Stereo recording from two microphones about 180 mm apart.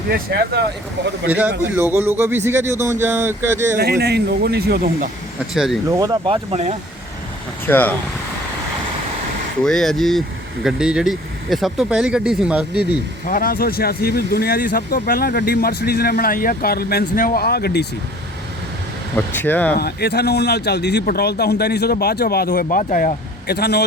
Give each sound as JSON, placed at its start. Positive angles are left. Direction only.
{"t": 0.1, "sound": "speech", "side_deg": -65}
{"t": 1.3, "sound": "a man's voice", "side_deg": -10}
{"t": 3.8, "sound": "speech", "side_deg": -65}
{"t": 5.5, "sound": "speech", "side_deg": 0}
{"t": 5.9, "sound": "speech", "side_deg": -20}
{"t": 7.7, "sound": "speech", "side_deg": 10}
{"t": 9.6, "sound": "speech", "side_deg": 0}
{"t": 13.2, "sound": "speech", "side_deg": 50}
{"t": 19.1, "sound": "speech", "side_deg": 10}
{"t": 19.8, "sound": "speech", "side_deg": 60}
{"t": 22.8, "sound": "speech", "side_deg": 45}